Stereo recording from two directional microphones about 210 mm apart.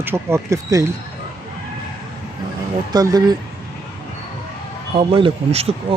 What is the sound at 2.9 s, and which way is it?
Speech, 20° right (ahead or behind).